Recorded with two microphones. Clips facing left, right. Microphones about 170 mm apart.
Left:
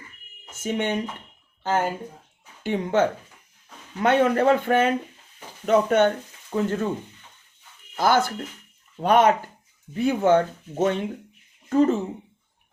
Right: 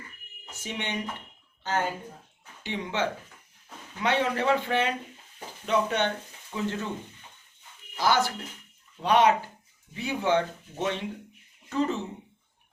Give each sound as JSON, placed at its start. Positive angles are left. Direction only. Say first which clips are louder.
{"t": 0.5, "sound": "speech", "louder": "left 8 dB", "side_deg": 50}
{"t": 7.9, "sound": "speech", "louder": "left 4 dB", "side_deg": 50}